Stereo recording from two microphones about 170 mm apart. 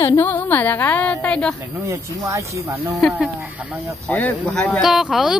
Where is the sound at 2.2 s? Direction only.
20° right (ahead or behind).